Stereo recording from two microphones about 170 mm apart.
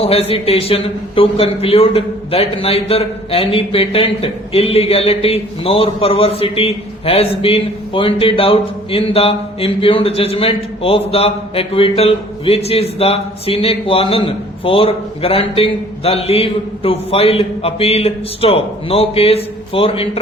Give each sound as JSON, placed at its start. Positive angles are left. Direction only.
{"t": 0.0, "sound": "a man's voice", "side_deg": 35}